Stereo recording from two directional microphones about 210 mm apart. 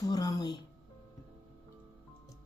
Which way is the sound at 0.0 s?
15° left (ahead or behind).